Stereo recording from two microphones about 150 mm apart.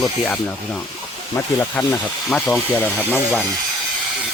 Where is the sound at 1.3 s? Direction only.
15° left (ahead or behind).